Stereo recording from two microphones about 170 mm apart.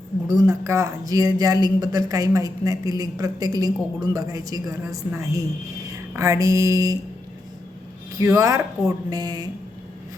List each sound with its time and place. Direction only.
0.3 s speech: 20° right (ahead or behind)
8.2 s speech: 20° right (ahead or behind)